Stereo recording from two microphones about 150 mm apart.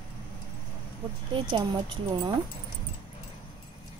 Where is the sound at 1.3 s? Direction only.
30° right (ahead or behind).